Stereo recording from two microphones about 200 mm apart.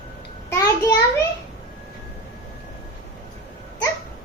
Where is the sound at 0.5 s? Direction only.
20° left (ahead or behind).